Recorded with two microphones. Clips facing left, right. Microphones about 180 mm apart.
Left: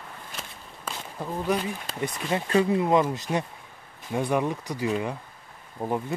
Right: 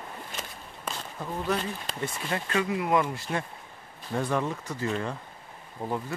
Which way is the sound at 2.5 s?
30° left (ahead or behind).